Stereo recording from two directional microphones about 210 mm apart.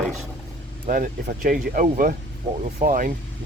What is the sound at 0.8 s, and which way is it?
Speech, 40° right (ahead or behind).